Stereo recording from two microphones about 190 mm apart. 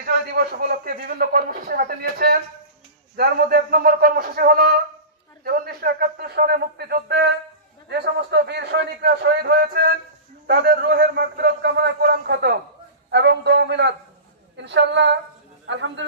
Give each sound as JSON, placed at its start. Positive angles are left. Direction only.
{"t": 0.0, "sound": "speech", "side_deg": -55}
{"t": 15.6, "sound": "a man's voice", "side_deg": -75}